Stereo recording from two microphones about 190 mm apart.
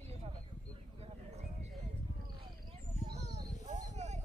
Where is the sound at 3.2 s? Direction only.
35° right (ahead or behind).